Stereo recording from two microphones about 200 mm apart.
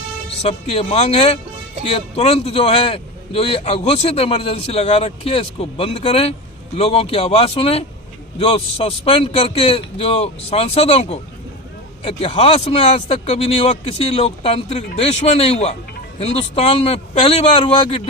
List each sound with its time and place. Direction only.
0.4 s a man's voice: 30° left (ahead or behind)